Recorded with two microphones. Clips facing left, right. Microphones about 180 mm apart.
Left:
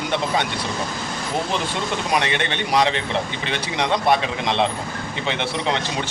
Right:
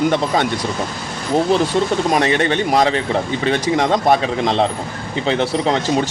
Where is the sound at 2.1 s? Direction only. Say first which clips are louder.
Right 6 dB; 40° right (ahead or behind).